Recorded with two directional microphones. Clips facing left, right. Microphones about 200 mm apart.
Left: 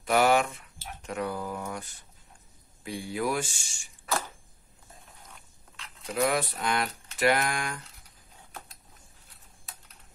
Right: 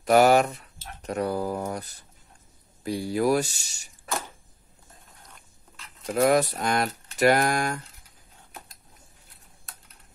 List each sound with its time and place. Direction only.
0.0 s speech: 40° right (ahead or behind)
6.1 s speech: 45° right (ahead or behind)